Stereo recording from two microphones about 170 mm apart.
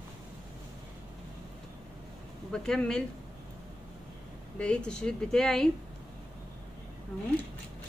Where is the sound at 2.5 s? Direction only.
5° left (ahead or behind).